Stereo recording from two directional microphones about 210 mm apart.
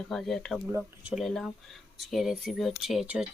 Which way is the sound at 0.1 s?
Centre (ahead or behind).